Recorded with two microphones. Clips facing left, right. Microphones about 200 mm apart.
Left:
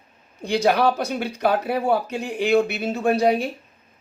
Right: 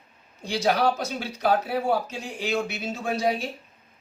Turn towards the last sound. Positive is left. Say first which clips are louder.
# left 7 dB
turn(degrees=60)  # may be behind; listen again after turning